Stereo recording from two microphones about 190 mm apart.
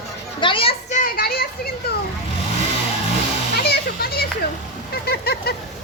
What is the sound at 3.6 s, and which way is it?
Children playing, 55° left (ahead or behind).